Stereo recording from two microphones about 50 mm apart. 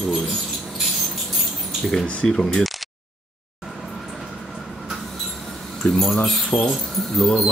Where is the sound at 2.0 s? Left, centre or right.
Left.